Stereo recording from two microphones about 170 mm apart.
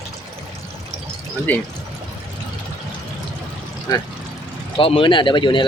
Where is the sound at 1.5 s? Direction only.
10° left (ahead or behind).